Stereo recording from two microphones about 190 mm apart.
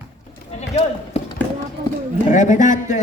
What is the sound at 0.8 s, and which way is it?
Chop, 35° left (ahead or behind).